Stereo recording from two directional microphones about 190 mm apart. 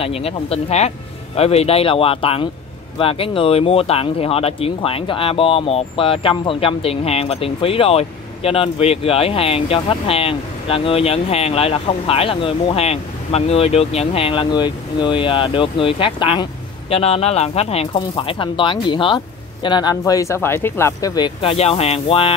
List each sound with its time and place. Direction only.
0.0 s speech: 30° left (ahead or behind)